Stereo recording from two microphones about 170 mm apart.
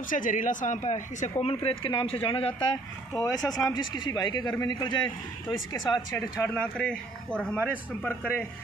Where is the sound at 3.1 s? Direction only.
20° left (ahead or behind).